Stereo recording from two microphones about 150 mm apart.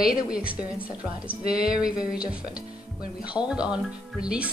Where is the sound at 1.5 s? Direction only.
5° right (ahead or behind).